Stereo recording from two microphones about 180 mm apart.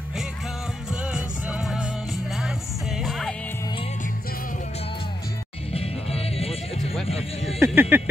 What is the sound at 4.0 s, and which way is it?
Music, 50° left (ahead or behind).